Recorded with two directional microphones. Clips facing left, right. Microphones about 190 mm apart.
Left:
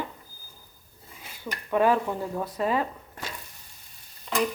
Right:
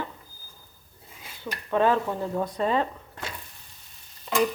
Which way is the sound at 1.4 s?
10° left (ahead or behind).